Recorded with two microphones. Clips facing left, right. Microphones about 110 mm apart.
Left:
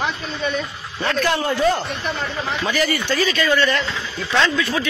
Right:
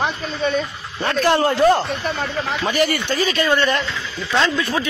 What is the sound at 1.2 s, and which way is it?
Speech, 65° right (ahead or behind).